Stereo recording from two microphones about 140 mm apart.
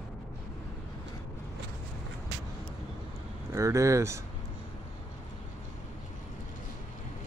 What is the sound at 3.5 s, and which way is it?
Speech, 20° right (ahead or behind).